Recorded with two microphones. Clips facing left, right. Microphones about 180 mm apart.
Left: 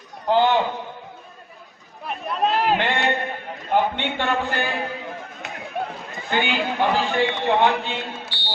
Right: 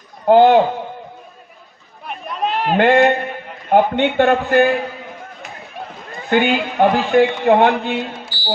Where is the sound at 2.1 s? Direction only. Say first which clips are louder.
Even; centre (ahead or behind).